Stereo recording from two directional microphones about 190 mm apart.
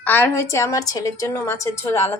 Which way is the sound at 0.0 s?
10° left (ahead or behind).